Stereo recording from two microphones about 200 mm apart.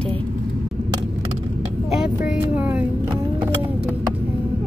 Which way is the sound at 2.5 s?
5° right (ahead or behind).